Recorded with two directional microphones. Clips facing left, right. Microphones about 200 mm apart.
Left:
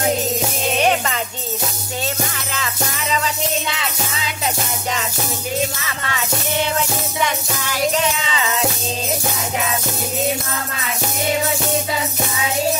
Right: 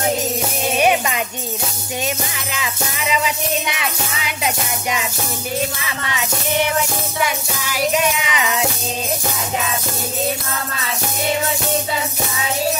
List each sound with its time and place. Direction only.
0.7 s music: 10° right (ahead or behind)
2.5 s music: 10° right (ahead or behind)
5.9 s music: 15° right (ahead or behind)